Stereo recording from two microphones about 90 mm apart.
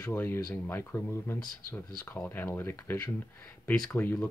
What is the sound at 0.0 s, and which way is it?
Speech, 25° left (ahead or behind).